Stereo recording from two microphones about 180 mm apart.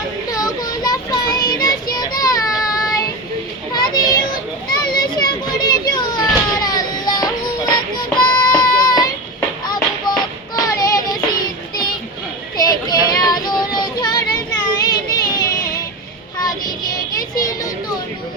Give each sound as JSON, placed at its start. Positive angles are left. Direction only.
{"t": 0.3, "sound": "child singing", "side_deg": 20}
{"t": 3.7, "sound": "children playing", "side_deg": 20}
{"t": 8.2, "sound": "music", "side_deg": 25}
{"t": 12.5, "sound": "child singing", "side_deg": 20}
{"t": 17.4, "sound": "children playing", "side_deg": 20}